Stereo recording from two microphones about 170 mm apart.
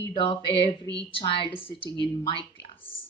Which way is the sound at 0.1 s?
25° left (ahead or behind).